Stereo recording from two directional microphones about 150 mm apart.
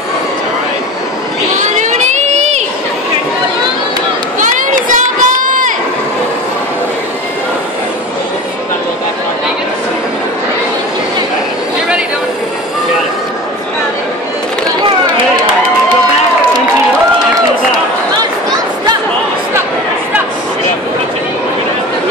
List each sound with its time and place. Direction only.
1.6 s crowd: 55° right (ahead or behind)
4.4 s run: 60° right (ahead or behind)
5.4 s crowd: 60° right (ahead or behind)